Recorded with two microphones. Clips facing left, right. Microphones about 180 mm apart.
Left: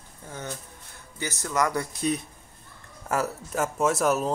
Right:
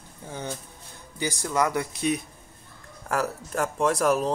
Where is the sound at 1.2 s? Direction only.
15° right (ahead or behind).